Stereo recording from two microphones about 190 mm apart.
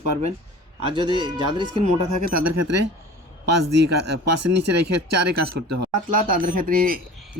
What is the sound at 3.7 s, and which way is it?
Speech, 65° right (ahead or behind).